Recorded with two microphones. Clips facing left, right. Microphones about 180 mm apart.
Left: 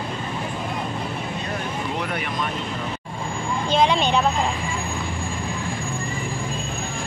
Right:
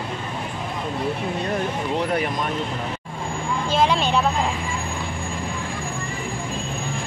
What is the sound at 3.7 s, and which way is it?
Speech, 5° right (ahead or behind).